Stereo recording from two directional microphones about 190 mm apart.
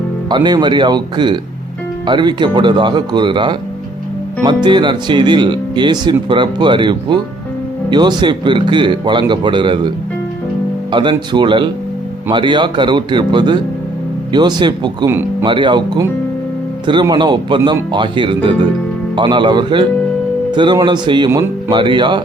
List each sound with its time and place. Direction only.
0.3 s speech: 25° right (ahead or behind)
10.9 s speech: 25° right (ahead or behind)